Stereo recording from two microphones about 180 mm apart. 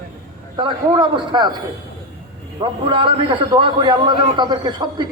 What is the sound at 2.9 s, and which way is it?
A man's voice, 30° right (ahead or behind).